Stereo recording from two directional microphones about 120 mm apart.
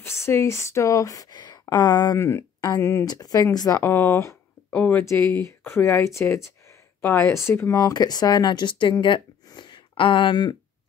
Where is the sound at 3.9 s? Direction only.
20° left (ahead or behind).